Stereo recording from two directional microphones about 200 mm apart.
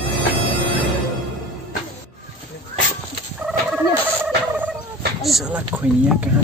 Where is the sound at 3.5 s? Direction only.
5° right (ahead or behind).